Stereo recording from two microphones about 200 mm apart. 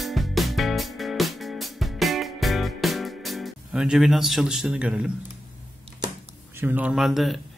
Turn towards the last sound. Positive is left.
turn(degrees=0)  # may be behind; listen again after turning